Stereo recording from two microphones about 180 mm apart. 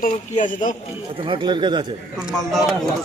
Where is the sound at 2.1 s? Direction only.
5° right (ahead or behind).